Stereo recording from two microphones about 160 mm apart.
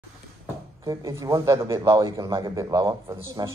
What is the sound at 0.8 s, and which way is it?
A man's voice, 20° right (ahead or behind).